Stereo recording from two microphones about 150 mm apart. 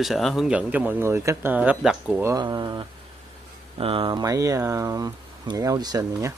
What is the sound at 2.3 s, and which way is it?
Speech, 30° right (ahead or behind).